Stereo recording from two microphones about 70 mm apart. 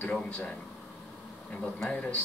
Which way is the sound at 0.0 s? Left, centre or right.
Centre.